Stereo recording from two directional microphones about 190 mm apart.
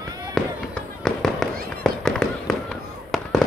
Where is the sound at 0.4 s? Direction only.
5° left (ahead or behind).